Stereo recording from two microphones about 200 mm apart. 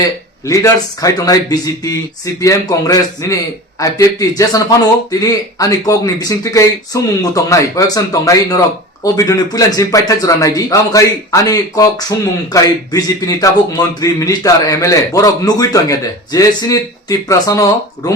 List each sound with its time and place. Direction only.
0.0 s speech: 15° left (ahead or behind)